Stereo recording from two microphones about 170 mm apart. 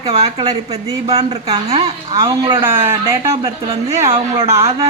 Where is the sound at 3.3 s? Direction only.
35° right (ahead or behind).